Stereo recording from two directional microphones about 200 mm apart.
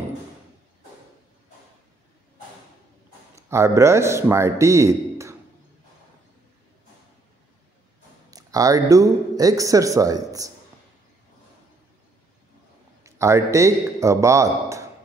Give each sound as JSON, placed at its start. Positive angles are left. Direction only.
{"t": 3.3, "sound": "a man's voice", "side_deg": -15}
{"t": 8.3, "sound": "speech", "side_deg": -15}
{"t": 13.0, "sound": "a man's voice", "side_deg": -15}